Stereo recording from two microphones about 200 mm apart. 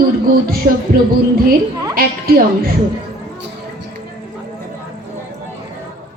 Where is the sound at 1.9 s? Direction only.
45° right (ahead or behind).